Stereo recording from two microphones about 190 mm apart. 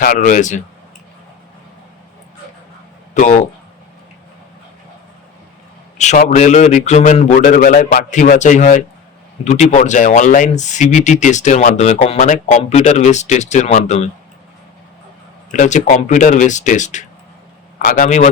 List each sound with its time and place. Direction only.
0.0 s speech: 45° left (ahead or behind)
3.2 s speech: 40° left (ahead or behind)
6.0 s speech: 40° left (ahead or behind)
15.5 s speech: 40° left (ahead or behind)